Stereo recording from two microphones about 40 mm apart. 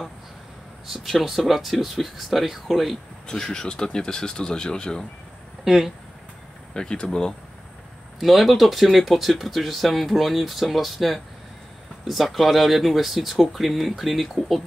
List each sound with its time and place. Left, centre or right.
0.8 s speech: centre
3.3 s speech: centre
6.7 s speech: centre
8.2 s speech: centre